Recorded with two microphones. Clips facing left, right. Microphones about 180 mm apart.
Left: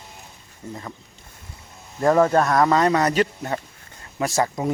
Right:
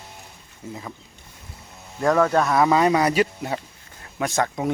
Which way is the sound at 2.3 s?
Centre (ahead or behind).